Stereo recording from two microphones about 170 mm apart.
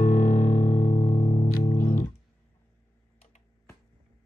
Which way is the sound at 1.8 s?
55° left (ahead or behind).